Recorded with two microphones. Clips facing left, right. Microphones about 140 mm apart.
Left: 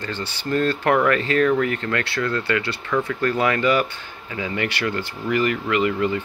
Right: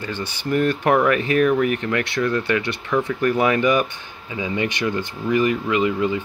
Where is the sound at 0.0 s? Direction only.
15° right (ahead or behind).